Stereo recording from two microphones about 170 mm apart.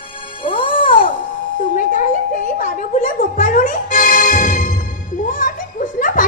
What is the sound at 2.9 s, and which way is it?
Music, 50° left (ahead or behind).